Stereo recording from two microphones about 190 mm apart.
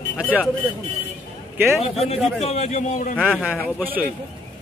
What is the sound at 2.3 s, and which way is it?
Speech, 35° left (ahead or behind).